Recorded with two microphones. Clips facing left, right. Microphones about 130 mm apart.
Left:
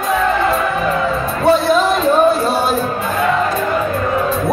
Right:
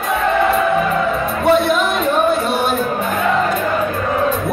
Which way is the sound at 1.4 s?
35° left (ahead or behind).